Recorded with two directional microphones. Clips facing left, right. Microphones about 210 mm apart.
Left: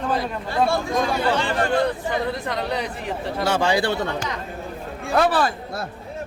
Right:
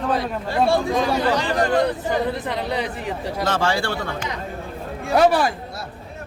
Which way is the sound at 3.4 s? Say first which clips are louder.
Left 2 dB; 15° left (ahead or behind).